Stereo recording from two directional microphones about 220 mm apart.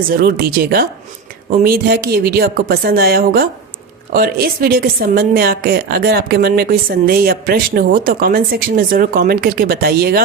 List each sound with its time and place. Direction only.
0.1 s a woman's voice: 45° right (ahead or behind)